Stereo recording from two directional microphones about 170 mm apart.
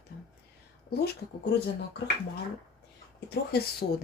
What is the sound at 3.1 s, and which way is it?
Speech, 70° left (ahead or behind).